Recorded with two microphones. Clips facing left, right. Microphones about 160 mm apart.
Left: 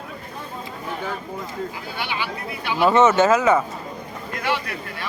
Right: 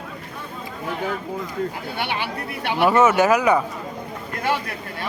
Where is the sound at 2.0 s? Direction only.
55° right (ahead or behind).